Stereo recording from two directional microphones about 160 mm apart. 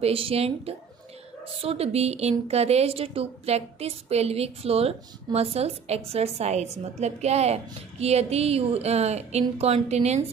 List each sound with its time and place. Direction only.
0.0 s a woman's voice: 35° right (ahead or behind)